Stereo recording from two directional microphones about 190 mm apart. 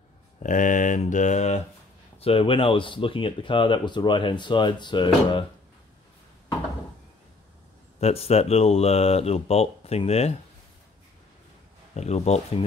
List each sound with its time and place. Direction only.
0.4 s speech: 40° left (ahead or behind); by 5.4 s 25° left (ahead or behind)
8.0 s speech: 35° left (ahead or behind)
11.9 s speech: 35° left (ahead or behind)